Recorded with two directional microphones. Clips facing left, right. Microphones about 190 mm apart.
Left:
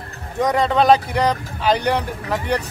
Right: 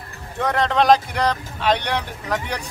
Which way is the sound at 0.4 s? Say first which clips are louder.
Left 3 dB; 10° left (ahead or behind).